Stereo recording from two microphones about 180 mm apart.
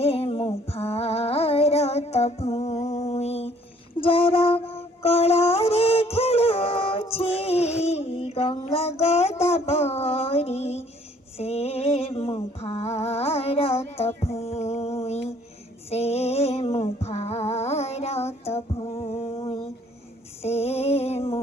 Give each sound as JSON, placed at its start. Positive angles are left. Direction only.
{"t": 0.0, "sound": "music", "side_deg": 35}
{"t": 9.0, "sound": "child singing", "side_deg": 35}
{"t": 11.3, "sound": "a sound", "side_deg": 35}
{"t": 20.4, "sound": "music", "side_deg": 35}